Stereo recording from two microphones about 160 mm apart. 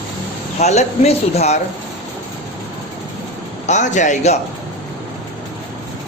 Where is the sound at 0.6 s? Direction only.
45° left (ahead or behind).